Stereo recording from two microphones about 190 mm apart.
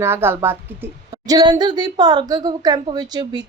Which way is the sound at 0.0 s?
10° right (ahead or behind).